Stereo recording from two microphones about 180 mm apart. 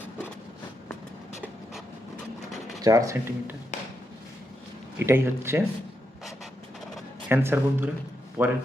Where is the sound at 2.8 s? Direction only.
20° right (ahead or behind).